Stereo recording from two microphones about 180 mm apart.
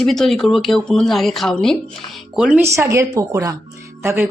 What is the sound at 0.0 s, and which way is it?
Speech, centre (ahead or behind).